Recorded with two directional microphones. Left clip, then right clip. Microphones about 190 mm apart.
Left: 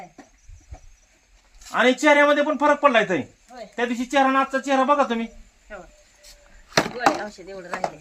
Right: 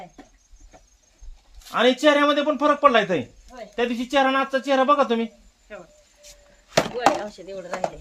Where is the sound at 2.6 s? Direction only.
45° right (ahead or behind).